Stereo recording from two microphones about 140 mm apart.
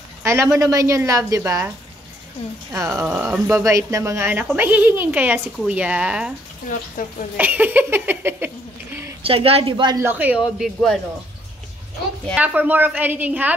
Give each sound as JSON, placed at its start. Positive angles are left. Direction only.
{"t": 0.2, "sound": "a woman's voice", "side_deg": -20}
{"t": 2.9, "sound": "speech", "side_deg": -5}
{"t": 3.3, "sound": "a woman's voice", "side_deg": -20}
{"t": 7.0, "sound": "a woman's voice", "side_deg": 70}
{"t": 7.3, "sound": "a woman's voice", "side_deg": -10}
{"t": 9.2, "sound": "a woman's voice", "side_deg": -40}
{"t": 9.9, "sound": "a woman's voice", "side_deg": -15}
{"t": 12.4, "sound": "a woman's voice", "side_deg": -10}